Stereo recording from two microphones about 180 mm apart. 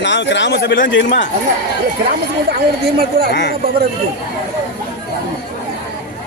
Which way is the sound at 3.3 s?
75° left (ahead or behind).